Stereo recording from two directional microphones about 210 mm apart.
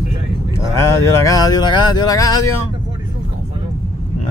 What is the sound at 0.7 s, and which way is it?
Speech, 15° left (ahead or behind).